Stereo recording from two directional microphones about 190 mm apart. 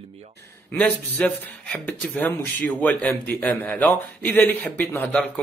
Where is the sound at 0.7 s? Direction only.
10° left (ahead or behind).